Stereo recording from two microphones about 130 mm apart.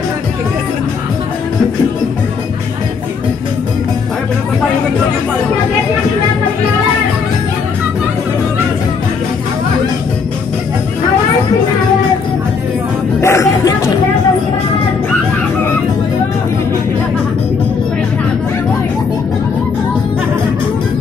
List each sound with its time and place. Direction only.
13.2 s music: 20° left (ahead or behind)